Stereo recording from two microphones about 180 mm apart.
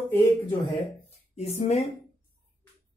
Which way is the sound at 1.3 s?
40° left (ahead or behind).